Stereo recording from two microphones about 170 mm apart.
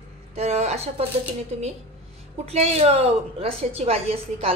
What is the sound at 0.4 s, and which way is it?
Speech, 40° right (ahead or behind).